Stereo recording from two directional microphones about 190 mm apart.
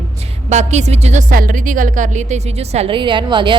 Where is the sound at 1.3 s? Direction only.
45° right (ahead or behind).